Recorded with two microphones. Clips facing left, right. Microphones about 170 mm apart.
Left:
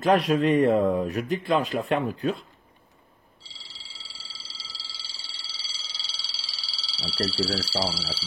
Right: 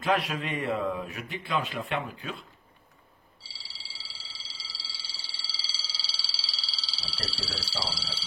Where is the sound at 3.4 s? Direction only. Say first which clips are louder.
Left 1 dB; centre (ahead or behind).